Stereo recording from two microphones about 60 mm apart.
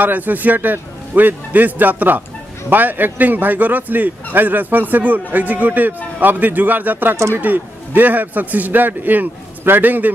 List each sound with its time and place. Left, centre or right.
0.0 s a man's voice: right